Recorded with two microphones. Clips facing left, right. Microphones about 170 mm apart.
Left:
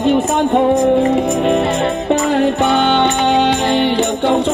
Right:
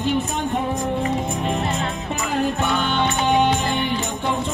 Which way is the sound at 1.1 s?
85° left.